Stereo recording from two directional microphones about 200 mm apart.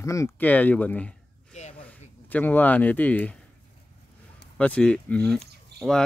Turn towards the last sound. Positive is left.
turn(degrees=0)  # may be behind; listen again after turning